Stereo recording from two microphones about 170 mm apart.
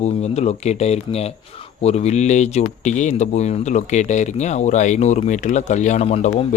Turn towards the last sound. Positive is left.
turn(degrees=40)  # may be behind; listen again after turning